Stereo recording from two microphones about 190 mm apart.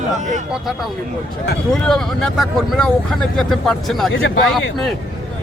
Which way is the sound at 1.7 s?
5° left (ahead or behind).